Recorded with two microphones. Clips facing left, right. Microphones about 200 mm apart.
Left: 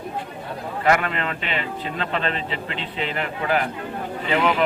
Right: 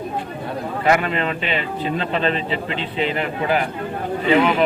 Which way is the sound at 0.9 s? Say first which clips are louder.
Right 2 dB; 20° right (ahead or behind).